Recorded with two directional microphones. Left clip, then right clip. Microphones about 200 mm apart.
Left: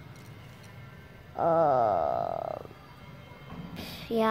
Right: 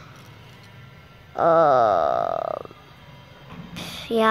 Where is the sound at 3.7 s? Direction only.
15° right (ahead or behind).